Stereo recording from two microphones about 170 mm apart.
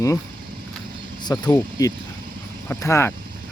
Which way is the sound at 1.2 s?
20° left (ahead or behind).